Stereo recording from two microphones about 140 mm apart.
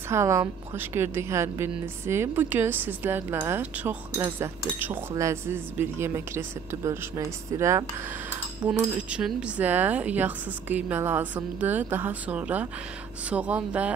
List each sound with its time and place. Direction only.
0.1 s a woman's voice: 20° right (ahead or behind)
8.6 s a woman's voice: 10° right (ahead or behind)